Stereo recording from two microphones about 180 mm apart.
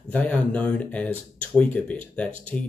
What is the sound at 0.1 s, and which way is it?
Speech, 10° left (ahead or behind).